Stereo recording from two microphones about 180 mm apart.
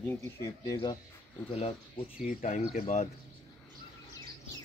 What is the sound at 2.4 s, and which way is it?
Speech, 40° left (ahead or behind).